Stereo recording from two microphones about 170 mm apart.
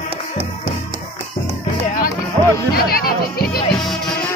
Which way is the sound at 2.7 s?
60° left (ahead or behind).